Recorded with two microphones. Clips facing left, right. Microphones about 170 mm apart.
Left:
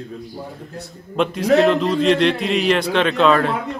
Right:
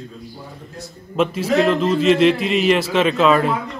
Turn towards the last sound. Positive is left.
turn(degrees=-5)  # may be behind; listen again after turning